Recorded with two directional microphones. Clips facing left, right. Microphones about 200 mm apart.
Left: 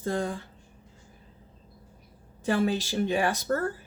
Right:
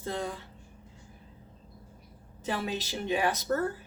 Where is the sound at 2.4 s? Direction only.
45° left (ahead or behind).